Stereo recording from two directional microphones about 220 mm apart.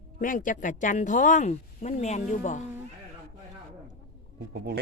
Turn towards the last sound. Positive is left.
turn(degrees=-50)  # may be behind; listen again after turning